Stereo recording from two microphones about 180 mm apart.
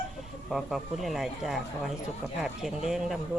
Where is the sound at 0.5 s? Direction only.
Centre (ahead or behind).